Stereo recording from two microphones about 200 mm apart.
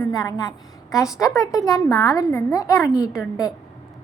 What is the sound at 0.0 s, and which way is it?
A woman's voice, 20° left (ahead or behind).